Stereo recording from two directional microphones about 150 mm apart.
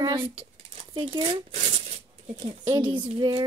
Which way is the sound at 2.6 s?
30° right (ahead or behind).